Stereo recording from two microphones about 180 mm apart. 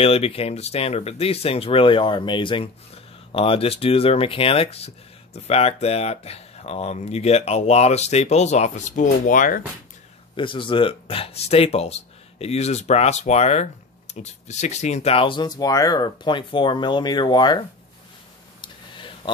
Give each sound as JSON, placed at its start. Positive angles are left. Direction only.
{"t": 0.0, "sound": "speech", "side_deg": 35}
{"t": 10.3, "sound": "speech", "side_deg": 30}
{"t": 18.6, "sound": "a sound", "side_deg": 25}